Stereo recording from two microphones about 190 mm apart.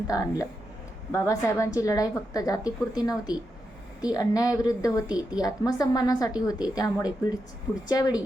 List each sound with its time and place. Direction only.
0.1 s a woman's voice: 15° left (ahead or behind)